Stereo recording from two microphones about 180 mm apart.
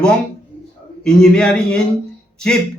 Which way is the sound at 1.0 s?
5° left (ahead or behind).